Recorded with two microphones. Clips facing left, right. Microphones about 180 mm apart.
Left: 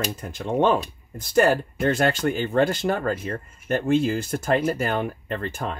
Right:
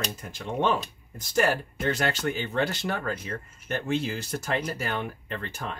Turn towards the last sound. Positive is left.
turn(degrees=50)  # may be behind; listen again after turning